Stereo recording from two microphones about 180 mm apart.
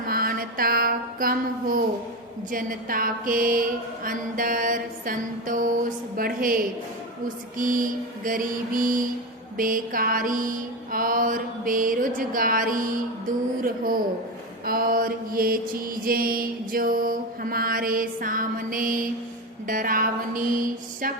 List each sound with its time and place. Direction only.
0.1 s mantra: 55° right (ahead or behind)